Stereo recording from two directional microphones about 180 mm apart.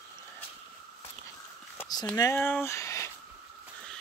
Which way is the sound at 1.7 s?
15° left (ahead or behind).